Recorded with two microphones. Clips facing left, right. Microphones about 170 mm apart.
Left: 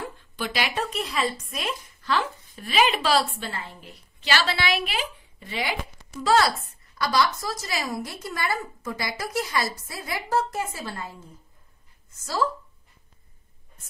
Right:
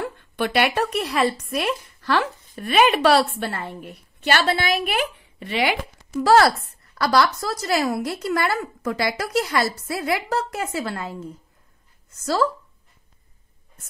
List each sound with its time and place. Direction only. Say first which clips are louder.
0.0 s a woman's voice: right 7 dB; 60° right (ahead or behind); by 5.8 s 75° right (ahead or behind)
6.2 s a woman's voice: right 5 dB; 60° right (ahead or behind); by 12.4 s 75° right (ahead or behind)